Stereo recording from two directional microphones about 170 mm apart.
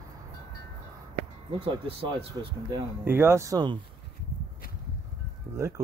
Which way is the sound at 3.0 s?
15° right (ahead or behind).